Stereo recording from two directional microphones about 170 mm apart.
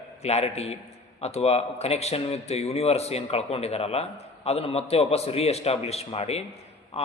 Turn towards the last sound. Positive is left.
turn(degrees=35)  # may be behind; listen again after turning